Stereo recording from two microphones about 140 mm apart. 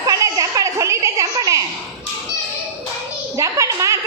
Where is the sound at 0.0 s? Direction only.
25° right (ahead or behind).